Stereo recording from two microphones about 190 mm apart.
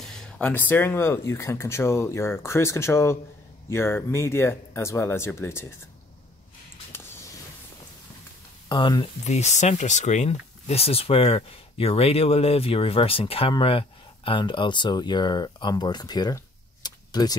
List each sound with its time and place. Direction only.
0.0 s speech: 5° left (ahead or behind)
6.9 s a sound: 10° left (ahead or behind)
8.6 s speech: 25° left (ahead or behind)
9.2 s speech: 35° left (ahead or behind); by 16.3 s 20° left (ahead or behind)
16.8 s tick-tock: 20° left (ahead or behind)